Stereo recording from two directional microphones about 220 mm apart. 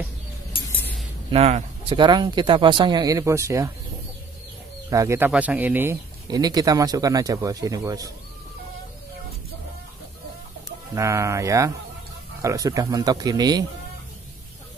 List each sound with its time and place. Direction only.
0.7 s cutlery: 10° left (ahead or behind)
1.3 s speech: 25° right (ahead or behind)
4.8 s speech: 15° right (ahead or behind)
11.0 s speech: 15° right (ahead or behind)